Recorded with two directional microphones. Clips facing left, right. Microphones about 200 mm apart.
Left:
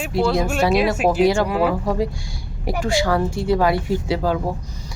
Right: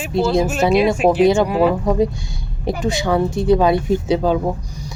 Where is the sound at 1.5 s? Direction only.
Centre (ahead or behind).